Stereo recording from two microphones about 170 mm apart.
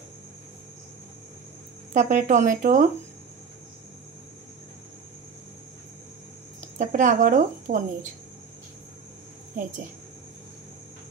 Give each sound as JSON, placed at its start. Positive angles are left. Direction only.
{"t": 2.0, "sound": "a woman's voice", "side_deg": -50}
{"t": 6.8, "sound": "a woman's voice", "side_deg": -50}